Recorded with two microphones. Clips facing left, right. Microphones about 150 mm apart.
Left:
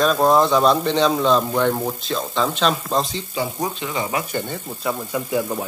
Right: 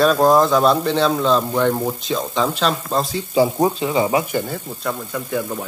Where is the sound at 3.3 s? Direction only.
30° right (ahead or behind).